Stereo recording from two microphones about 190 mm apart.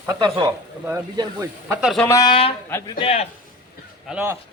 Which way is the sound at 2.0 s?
20° left (ahead or behind).